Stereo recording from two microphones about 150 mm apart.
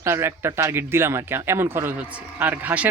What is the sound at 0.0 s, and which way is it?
Speech, 15° right (ahead or behind).